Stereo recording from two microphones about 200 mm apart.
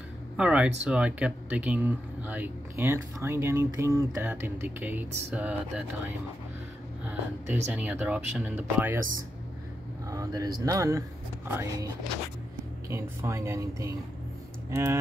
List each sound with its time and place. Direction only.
0.4 s speech: 5° right (ahead or behind)
10.0 s speech: 15° right (ahead or behind)
12.9 s speech: 15° right (ahead or behind)